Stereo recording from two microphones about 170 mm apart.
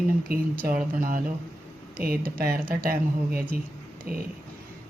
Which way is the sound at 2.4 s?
60° right (ahead or behind).